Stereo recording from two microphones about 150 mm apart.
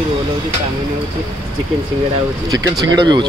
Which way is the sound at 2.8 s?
25° right (ahead or behind).